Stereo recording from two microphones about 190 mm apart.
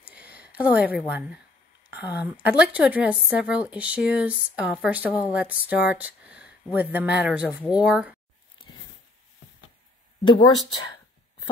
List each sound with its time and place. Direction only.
0.0 s a sound: 5° right (ahead or behind)
1.9 s a woman's voice: 10° right (ahead or behind)
10.2 s speech: 25° left (ahead or behind)